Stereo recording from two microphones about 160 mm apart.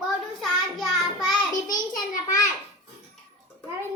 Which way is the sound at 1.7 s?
25° left (ahead or behind).